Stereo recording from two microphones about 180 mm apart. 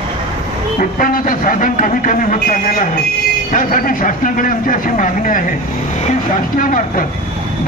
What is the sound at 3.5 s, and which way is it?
A man's voice, 50° left (ahead or behind).